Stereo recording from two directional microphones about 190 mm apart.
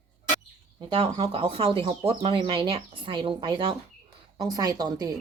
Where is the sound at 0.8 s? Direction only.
25° right (ahead or behind).